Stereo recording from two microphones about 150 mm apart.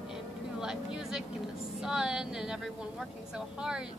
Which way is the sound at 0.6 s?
5° right (ahead or behind).